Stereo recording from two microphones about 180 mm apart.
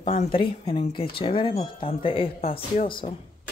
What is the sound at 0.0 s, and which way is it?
Speech, 30° left (ahead or behind).